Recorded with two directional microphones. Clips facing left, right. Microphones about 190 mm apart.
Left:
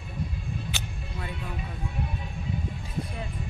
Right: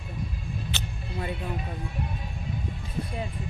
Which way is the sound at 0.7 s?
10° left (ahead or behind).